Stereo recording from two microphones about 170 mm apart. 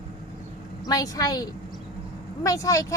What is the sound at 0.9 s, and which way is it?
A woman's voice, 20° left (ahead or behind).